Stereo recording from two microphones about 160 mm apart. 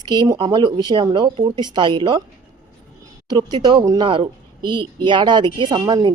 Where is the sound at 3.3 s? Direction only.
25° right (ahead or behind).